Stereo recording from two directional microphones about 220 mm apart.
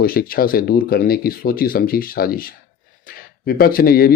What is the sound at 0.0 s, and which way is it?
A man's voice, 40° left (ahead or behind).